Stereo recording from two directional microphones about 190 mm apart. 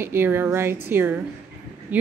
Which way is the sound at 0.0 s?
10° right (ahead or behind).